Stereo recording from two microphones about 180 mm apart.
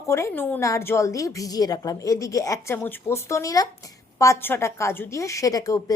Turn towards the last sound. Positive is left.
turn(degrees=20)  # may be behind; listen again after turning